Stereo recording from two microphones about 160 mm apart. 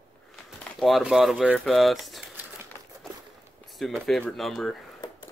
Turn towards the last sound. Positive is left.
turn(degrees=0)  # may be behind; listen again after turning